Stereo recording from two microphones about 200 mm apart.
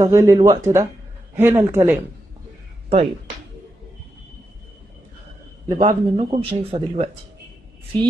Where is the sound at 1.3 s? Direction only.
10° right (ahead or behind).